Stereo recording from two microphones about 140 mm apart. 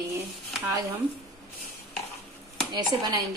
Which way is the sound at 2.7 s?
30° right (ahead or behind).